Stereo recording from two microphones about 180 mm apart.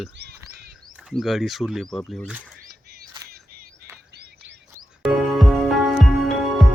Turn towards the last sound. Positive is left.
turn(degrees=0)  # may be behind; listen again after turning